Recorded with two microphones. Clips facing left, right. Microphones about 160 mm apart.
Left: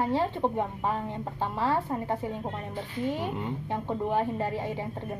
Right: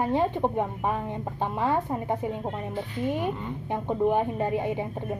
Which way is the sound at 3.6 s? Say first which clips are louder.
Right 7 dB; 15° right (ahead or behind).